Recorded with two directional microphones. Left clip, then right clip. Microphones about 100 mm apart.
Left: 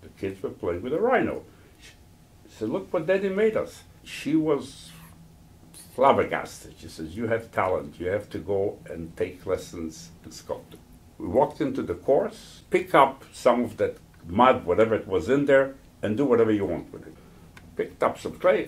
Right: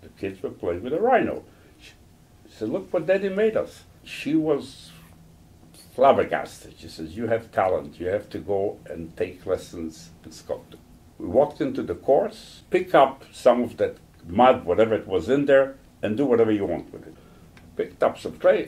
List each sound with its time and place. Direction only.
0.2 s speech: 30° left (ahead or behind)
2.6 s speech: 25° left (ahead or behind)
5.9 s speech: 30° left (ahead or behind)
11.1 s speech: 35° left (ahead or behind)
17.7 s speech: 35° left (ahead or behind)